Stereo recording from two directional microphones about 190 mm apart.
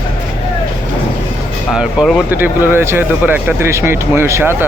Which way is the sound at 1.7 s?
5° right (ahead or behind).